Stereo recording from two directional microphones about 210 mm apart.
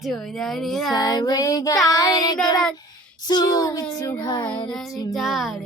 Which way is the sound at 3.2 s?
20° left (ahead or behind).